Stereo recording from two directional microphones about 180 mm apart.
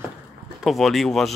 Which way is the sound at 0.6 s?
Centre (ahead or behind).